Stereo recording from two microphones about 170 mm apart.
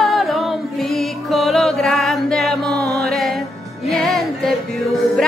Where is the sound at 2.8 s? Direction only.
70° right (ahead or behind).